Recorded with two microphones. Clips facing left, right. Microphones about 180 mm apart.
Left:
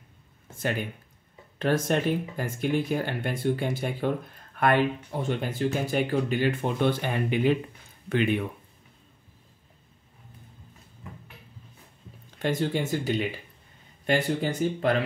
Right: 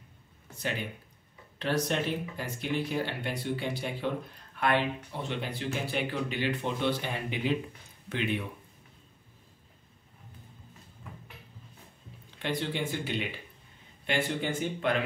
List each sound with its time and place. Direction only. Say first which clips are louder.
0.5 s speech: left 5 dB; 50° left (ahead or behind)
12.4 s speech: left 5 dB; 45° left (ahead or behind)